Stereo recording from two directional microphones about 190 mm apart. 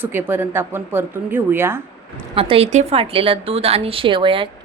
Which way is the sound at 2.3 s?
30° right (ahead or behind).